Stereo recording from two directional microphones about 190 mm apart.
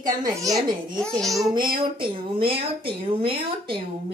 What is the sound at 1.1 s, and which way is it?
Speech, centre (ahead or behind).